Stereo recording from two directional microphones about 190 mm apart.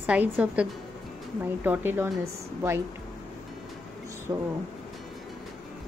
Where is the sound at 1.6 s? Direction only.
10° right (ahead or behind).